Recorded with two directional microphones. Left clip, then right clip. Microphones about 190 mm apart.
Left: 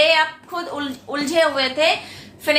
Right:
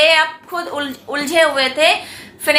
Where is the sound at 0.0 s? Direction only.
20° right (ahead or behind).